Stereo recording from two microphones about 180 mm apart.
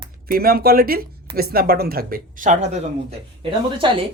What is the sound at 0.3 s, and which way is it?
Speech, 55° right (ahead or behind).